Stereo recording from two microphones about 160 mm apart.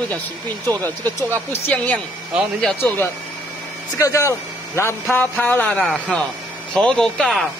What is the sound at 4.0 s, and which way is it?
Speech, 20° left (ahead or behind).